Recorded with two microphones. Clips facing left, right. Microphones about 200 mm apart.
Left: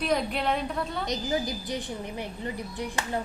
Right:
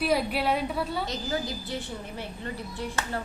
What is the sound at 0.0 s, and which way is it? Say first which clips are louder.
A woman's voice: right 1 dB; 5° right (ahead or behind).